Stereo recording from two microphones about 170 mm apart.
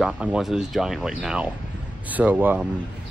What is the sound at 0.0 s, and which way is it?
Speech, 5° right (ahead or behind).